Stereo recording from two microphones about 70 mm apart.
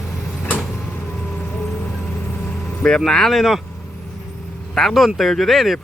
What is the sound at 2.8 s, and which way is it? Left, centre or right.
Speech, centre.